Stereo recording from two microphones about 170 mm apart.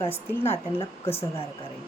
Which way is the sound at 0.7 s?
35° left (ahead or behind).